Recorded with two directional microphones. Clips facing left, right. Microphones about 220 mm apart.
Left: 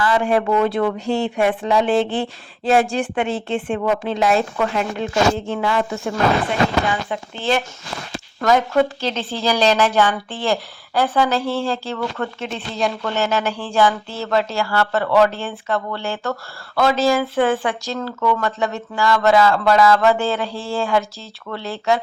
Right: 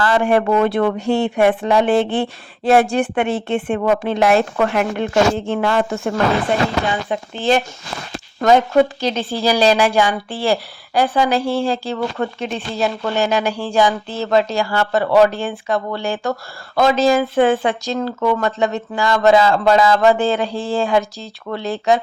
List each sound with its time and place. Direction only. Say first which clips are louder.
0.2 s a woman's voice: right 4 dB; 55° right (ahead or behind)
7.1 s speech: right 4 dB; 40° right (ahead or behind)
8.4 s a woman's voice: right 3 dB; 20° right (ahead or behind)